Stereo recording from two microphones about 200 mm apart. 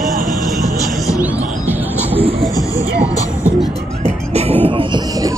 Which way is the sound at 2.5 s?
15° left (ahead or behind).